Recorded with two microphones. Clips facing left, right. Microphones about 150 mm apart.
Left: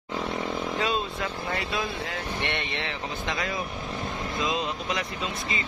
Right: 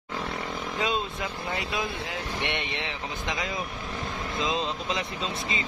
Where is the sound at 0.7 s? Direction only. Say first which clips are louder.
Right 2 dB; 20° right (ahead or behind).